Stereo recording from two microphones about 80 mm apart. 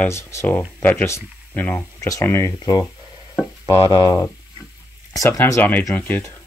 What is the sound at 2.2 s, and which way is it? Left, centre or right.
Speech, left.